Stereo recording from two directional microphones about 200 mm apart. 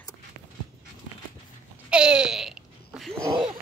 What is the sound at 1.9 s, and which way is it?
Babbling, 5° right (ahead or behind).